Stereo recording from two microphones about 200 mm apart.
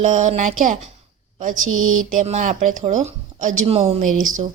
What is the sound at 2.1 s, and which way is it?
A woman's voice, 35° right (ahead or behind).